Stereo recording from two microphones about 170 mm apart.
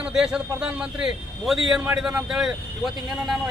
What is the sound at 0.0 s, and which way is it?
A man's voice, 5° right (ahead or behind).